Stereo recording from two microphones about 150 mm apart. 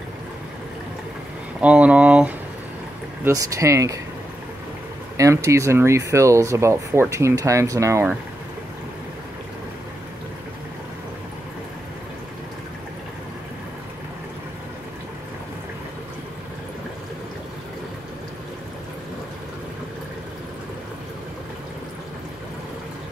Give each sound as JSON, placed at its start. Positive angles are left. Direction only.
{"t": 1.6, "sound": "speech", "side_deg": -10}
{"t": 3.3, "sound": "speech", "side_deg": -20}
{"t": 5.1, "sound": "speech", "side_deg": -20}